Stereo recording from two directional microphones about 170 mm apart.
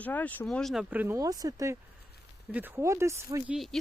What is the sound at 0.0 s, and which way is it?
Speech, 10° left (ahead or behind).